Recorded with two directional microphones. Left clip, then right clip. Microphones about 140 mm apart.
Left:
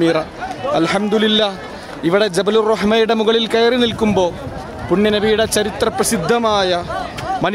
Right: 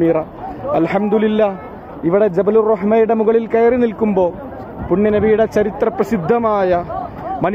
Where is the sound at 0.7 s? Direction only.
20° left (ahead or behind); by 3.0 s 35° left (ahead or behind).